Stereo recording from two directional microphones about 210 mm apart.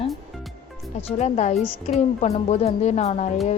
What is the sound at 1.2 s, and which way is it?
Speech, 35° left (ahead or behind).